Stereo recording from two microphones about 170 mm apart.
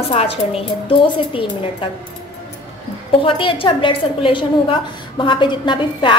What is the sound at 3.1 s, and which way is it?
A woman's voice, 30° left (ahead or behind).